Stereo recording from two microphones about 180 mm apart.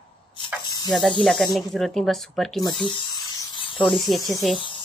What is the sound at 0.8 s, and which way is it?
Speech, centre (ahead or behind).